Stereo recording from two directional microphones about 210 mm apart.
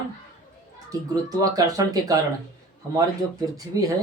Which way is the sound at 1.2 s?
15° right (ahead or behind).